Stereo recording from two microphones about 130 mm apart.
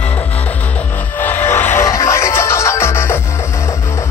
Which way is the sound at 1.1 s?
15° left (ahead or behind).